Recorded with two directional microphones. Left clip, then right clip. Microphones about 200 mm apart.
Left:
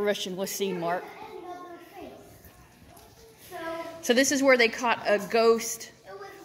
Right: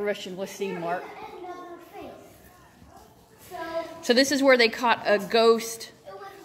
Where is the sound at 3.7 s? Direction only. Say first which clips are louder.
Right 2 dB; 5° left (ahead or behind).